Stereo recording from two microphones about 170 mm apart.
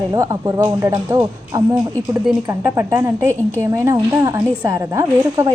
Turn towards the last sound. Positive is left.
turn(degrees=-15)  # may be behind; listen again after turning